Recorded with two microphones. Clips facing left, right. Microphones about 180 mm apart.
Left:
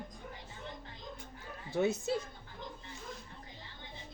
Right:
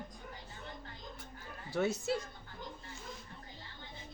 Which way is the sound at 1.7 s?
20° left (ahead or behind).